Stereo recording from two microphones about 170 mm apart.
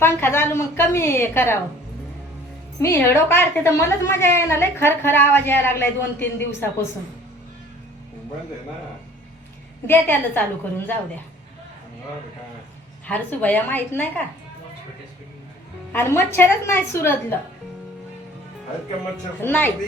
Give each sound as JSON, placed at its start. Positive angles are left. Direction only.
{"t": 0.0, "sound": "a woman's voice", "side_deg": 15}
{"t": 2.8, "sound": "a woman's voice", "side_deg": 15}
{"t": 9.8, "sound": "a woman's voice", "side_deg": 10}
{"t": 13.1, "sound": "a woman's voice", "side_deg": 10}
{"t": 15.9, "sound": "a woman's voice", "side_deg": 15}
{"t": 19.4, "sound": "a woman's voice", "side_deg": 10}